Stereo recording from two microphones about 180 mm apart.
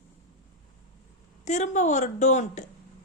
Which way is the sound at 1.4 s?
40° left (ahead or behind).